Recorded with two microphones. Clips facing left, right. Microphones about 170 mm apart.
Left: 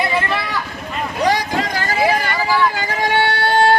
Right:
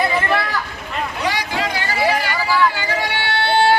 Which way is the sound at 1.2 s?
40° left (ahead or behind).